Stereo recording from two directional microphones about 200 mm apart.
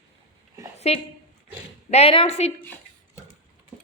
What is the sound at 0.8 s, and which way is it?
A woman's voice, 30° left (ahead or behind).